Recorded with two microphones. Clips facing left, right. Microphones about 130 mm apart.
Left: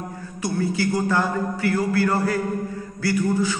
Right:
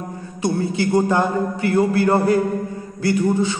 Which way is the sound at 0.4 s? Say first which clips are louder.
Right 3 dB; 25° right (ahead or behind).